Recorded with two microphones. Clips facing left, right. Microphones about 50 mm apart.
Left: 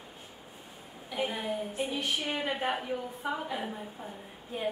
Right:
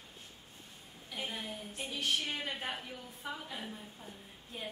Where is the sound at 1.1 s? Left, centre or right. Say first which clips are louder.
Left 9 dB; centre.